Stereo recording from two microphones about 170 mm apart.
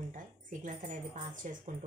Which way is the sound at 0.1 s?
50° right (ahead or behind).